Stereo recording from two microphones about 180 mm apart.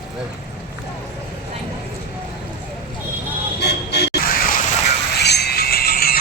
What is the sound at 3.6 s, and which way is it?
Vehicle, 65° left (ahead or behind).